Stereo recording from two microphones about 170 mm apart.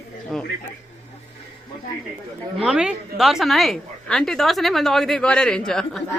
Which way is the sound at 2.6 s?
5° right (ahead or behind).